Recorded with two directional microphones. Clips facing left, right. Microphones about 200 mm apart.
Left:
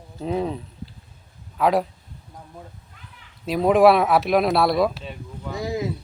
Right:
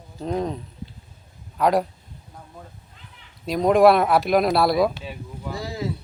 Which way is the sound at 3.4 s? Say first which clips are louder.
Even; 5° left (ahead or behind).